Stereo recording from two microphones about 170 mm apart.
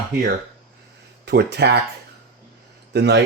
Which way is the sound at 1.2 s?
75° right (ahead or behind).